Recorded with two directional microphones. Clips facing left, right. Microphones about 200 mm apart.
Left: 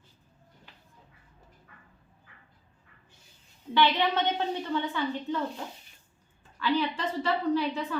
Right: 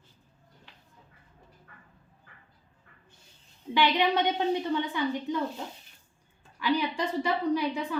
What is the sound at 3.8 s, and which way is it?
A woman's voice, 15° right (ahead or behind).